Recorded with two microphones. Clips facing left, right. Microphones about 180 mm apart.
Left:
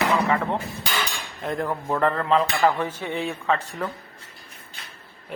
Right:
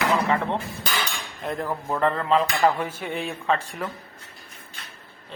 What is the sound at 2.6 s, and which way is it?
Dishes, 10° right (ahead or behind).